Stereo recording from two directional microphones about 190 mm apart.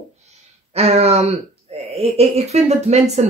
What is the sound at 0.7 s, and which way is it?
Speech, 35° right (ahead or behind).